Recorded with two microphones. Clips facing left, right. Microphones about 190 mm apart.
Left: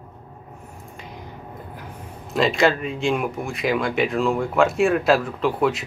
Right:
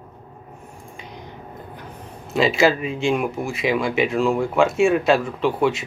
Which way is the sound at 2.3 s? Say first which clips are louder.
Right 1 dB; 5° right (ahead or behind).